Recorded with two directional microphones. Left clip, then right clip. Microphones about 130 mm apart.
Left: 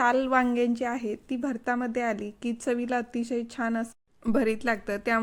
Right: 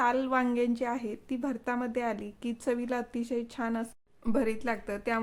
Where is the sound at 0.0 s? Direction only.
30° left (ahead or behind).